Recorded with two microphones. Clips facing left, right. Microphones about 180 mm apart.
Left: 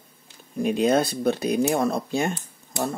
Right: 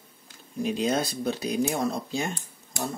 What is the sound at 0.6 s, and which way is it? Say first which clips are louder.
Speech: left 5 dB; 55° left (ahead or behind).